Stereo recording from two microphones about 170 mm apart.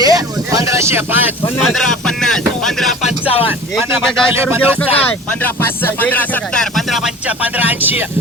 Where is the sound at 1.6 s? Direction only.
Centre (ahead or behind).